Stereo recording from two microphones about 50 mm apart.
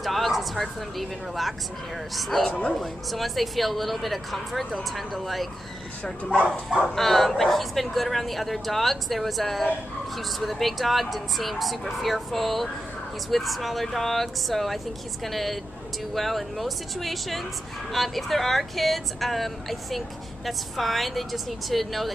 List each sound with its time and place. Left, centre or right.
0.0 s speech: centre
6.0 s speech: centre
7.0 s speech: centre